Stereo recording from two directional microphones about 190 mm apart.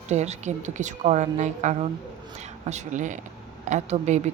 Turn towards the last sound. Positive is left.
turn(degrees=-40)  # may be behind; listen again after turning